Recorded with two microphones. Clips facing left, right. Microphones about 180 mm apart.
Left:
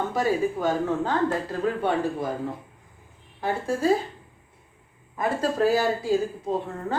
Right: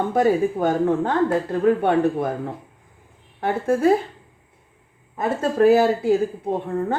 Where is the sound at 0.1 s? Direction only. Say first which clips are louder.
Right 5 dB; 55° right (ahead or behind).